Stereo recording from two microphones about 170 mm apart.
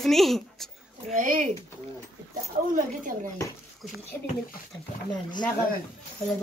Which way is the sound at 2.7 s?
50° right (ahead or behind).